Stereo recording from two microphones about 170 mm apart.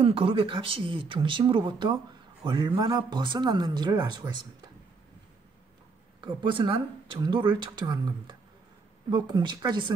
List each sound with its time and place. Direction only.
0.0 s speech: 30° right (ahead or behind)
6.2 s speech: 30° right (ahead or behind)